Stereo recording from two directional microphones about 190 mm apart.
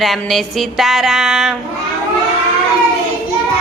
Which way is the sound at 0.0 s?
Centre (ahead or behind).